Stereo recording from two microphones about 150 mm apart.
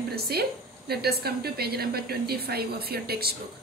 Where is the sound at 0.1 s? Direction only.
90° right.